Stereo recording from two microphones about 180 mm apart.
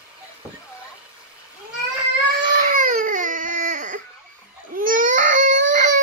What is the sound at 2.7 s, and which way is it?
Baby cry, 50° right (ahead or behind).